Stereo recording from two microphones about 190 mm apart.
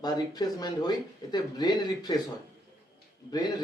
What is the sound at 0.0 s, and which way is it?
Speech, 20° left (ahead or behind).